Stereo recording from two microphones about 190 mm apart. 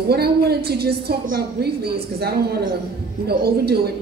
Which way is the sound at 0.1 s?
55° right (ahead or behind).